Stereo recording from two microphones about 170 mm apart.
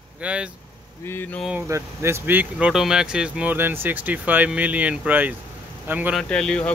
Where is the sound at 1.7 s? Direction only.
15° right (ahead or behind).